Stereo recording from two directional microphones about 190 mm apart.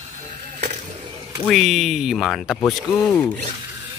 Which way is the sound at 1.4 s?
Centre (ahead or behind).